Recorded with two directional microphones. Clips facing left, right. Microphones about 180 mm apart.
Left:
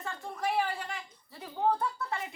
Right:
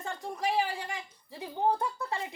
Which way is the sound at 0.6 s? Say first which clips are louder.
Right 1 dB; 15° right (ahead or behind).